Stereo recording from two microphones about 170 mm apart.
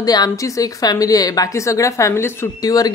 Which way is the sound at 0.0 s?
20° left (ahead or behind).